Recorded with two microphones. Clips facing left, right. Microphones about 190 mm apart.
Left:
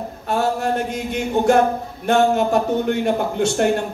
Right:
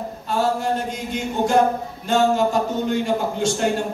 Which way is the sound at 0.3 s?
60° left (ahead or behind).